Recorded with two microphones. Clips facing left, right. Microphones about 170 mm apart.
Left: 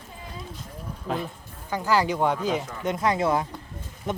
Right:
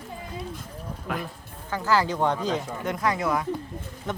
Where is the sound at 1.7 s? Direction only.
15° left (ahead or behind).